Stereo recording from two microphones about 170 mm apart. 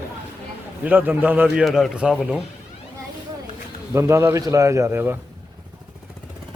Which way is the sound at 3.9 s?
15° right (ahead or behind).